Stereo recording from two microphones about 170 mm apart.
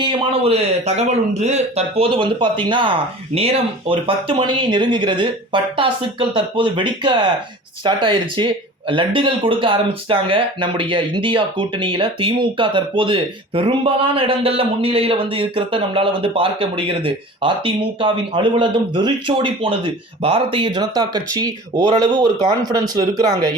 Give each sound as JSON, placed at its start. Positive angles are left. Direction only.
{"t": 0.0, "sound": "speech", "side_deg": -30}